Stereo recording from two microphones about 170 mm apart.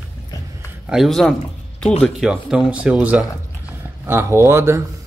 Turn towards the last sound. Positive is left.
turn(degrees=-15)  # may be behind; listen again after turning